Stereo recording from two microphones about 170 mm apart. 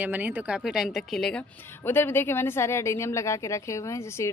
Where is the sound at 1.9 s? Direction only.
15° left (ahead or behind).